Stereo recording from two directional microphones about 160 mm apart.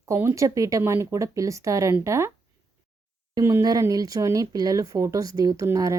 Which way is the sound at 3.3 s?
20° right (ahead or behind).